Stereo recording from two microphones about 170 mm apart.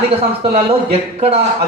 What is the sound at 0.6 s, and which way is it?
Speech, 35° right (ahead or behind).